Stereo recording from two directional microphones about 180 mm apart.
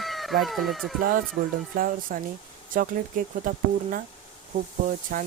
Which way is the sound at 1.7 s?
50° right (ahead or behind).